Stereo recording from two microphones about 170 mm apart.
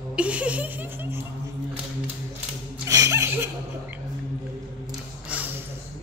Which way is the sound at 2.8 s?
20° right (ahead or behind).